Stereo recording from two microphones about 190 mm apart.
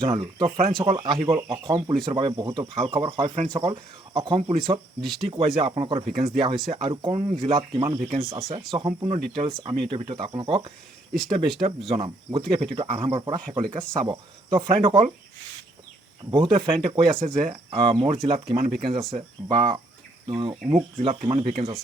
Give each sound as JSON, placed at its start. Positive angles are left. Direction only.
{"t": 0.0, "sound": "speech", "side_deg": -25}
{"t": 4.9, "sound": "speech", "side_deg": 0}
{"t": 5.2, "sound": "speech", "side_deg": -30}
{"t": 16.3, "sound": "speech", "side_deg": -25}